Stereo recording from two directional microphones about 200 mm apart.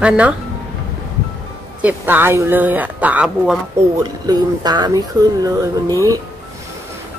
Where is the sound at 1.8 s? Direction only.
10° right (ahead or behind).